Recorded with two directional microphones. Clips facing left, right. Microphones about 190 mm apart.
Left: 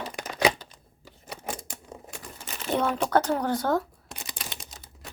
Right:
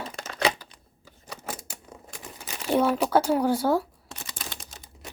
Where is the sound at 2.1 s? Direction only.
10° right (ahead or behind).